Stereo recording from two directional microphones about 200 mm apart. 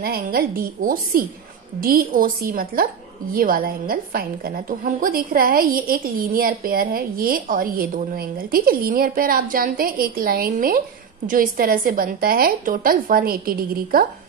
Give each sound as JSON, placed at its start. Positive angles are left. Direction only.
{"t": 0.0, "sound": "a woman's voice", "side_deg": -50}